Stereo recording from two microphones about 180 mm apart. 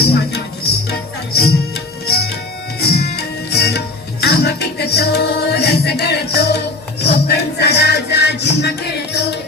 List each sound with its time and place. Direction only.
0.0 s music: 60° left (ahead or behind)